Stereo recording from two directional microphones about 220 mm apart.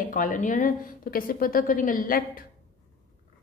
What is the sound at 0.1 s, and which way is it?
A woman's voice, 35° left (ahead or behind).